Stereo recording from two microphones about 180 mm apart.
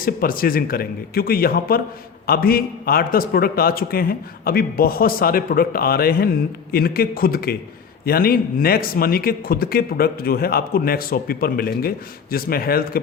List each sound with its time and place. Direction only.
0.0 s speech: 55° left (ahead or behind)